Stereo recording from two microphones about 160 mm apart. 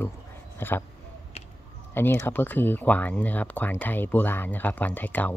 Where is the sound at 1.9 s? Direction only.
15° left (ahead or behind).